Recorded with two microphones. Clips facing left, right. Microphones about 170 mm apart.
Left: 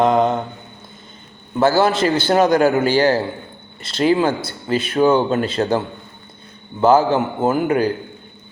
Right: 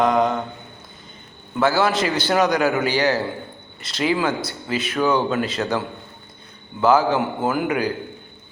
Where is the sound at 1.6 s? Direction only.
30° left (ahead or behind).